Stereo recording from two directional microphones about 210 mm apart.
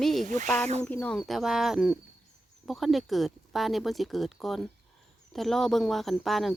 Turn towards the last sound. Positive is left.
turn(degrees=0)  # may be behind; listen again after turning